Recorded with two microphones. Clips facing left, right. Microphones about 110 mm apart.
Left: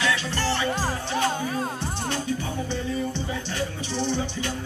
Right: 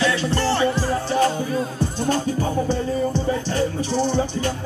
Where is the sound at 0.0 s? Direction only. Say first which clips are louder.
Right 5 dB; 35° right (ahead or behind).